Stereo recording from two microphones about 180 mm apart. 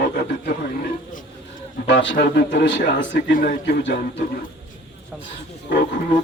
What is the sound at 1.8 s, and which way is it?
A man's voice, 80° left.